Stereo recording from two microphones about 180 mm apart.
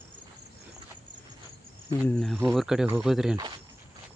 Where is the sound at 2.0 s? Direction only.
5° left (ahead or behind).